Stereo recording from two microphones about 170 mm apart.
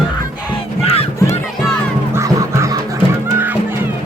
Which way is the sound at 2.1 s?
15° right (ahead or behind).